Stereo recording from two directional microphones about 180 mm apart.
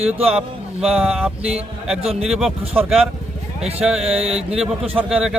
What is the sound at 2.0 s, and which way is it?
Speech, 35° right (ahead or behind).